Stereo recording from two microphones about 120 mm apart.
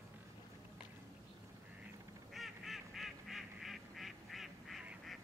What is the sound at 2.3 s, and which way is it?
Goose, centre (ahead or behind).